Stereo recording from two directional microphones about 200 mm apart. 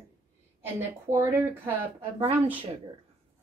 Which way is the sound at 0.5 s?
10° right (ahead or behind).